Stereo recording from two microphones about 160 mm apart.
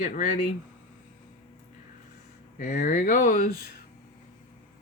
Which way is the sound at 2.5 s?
55° left (ahead or behind).